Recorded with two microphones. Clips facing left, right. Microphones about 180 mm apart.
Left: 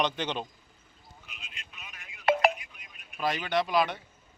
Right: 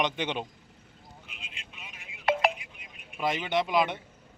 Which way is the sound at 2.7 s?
20° right (ahead or behind).